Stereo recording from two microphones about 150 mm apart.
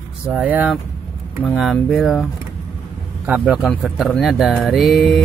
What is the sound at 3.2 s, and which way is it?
Speech, 10° right (ahead or behind).